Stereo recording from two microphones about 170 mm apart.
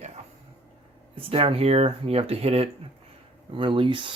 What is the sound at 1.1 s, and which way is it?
Speech, 30° right (ahead or behind).